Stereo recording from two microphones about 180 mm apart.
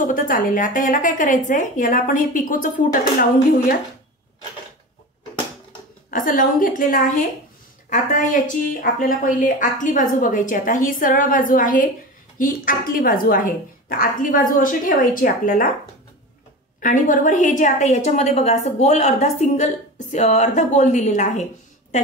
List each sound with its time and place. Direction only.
0.0 s a woman's voice: 50° left (ahead or behind)
6.0 s a woman's voice: 50° left (ahead or behind)
16.8 s a woman's voice: 45° left (ahead or behind)